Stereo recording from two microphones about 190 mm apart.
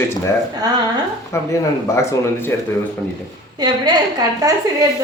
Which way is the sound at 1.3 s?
15° left (ahead or behind).